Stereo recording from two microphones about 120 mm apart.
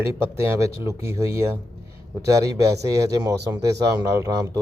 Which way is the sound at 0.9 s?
25° right (ahead or behind).